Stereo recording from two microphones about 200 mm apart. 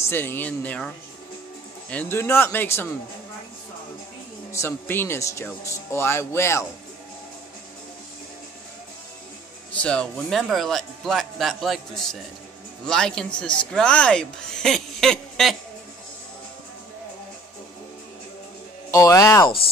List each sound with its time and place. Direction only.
0.0 s speech: 10° left (ahead or behind)
4.5 s speech: 15° left (ahead or behind)
9.7 s a man's voice: 5° left (ahead or behind)
18.9 s speech: 15° left (ahead or behind)